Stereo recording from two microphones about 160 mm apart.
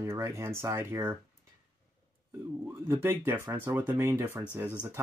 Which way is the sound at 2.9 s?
15° right (ahead or behind).